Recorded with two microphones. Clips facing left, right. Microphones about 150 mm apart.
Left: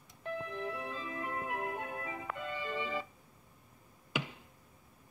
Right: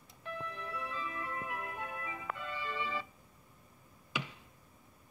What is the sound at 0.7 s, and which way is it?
Music, 45° left (ahead or behind).